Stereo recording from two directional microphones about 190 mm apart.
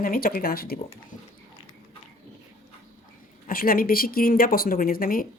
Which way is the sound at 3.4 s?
50° left (ahead or behind).